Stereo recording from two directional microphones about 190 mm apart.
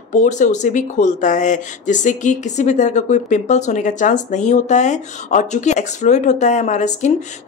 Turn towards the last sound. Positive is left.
turn(degrees=40)  # may be behind; listen again after turning